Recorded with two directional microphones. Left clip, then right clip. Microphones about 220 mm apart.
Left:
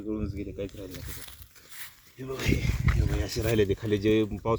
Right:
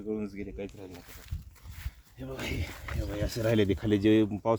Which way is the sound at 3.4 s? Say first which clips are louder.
Left 1 dB; 20° right (ahead or behind).